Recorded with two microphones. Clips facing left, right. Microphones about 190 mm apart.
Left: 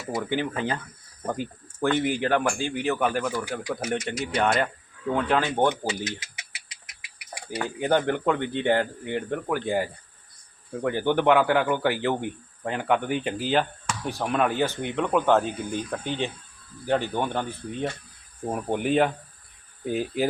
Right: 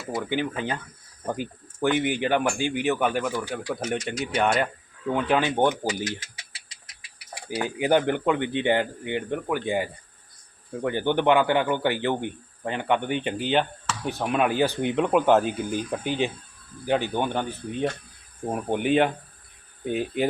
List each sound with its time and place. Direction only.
0.3 s speech: 15° right (ahead or behind)
5.8 s speech: 25° left (ahead or behind)
7.8 s speech: 5° right (ahead or behind)